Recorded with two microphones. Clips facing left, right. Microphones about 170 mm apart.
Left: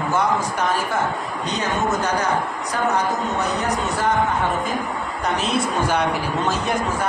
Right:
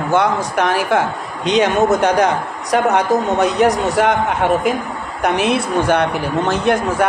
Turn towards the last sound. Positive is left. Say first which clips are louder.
# right 7 dB
turn(degrees=-65)  # may be behind; listen again after turning